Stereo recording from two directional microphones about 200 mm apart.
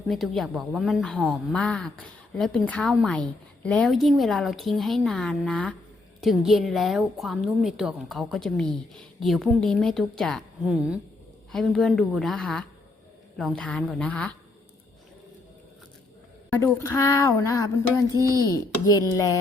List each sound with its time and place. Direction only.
0.1 s a woman's voice: centre (ahead or behind)
16.6 s speech: 10° left (ahead or behind)
18.1 s speech: 20° right (ahead or behind)
18.5 s speech: 15° left (ahead or behind)